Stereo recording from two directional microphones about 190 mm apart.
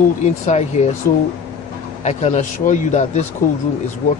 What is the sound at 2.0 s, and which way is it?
Speech, 35° left (ahead or behind).